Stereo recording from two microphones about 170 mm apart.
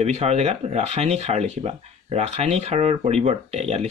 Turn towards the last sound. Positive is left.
turn(degrees=-40)  # may be behind; listen again after turning